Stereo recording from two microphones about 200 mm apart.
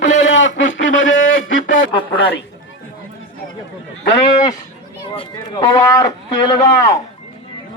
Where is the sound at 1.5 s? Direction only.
70° left (ahead or behind).